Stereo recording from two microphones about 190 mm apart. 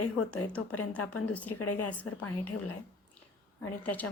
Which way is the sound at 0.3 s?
5° left (ahead or behind).